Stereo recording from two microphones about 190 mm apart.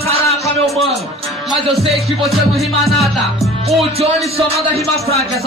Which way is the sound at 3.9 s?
30° right (ahead or behind).